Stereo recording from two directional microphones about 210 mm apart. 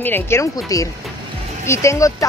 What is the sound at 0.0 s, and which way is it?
Speech, 10° left (ahead or behind).